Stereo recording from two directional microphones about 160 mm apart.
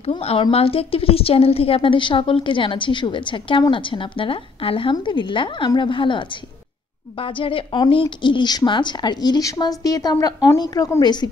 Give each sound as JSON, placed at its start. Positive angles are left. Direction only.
{"t": 0.2, "sound": "a woman's voice", "side_deg": 40}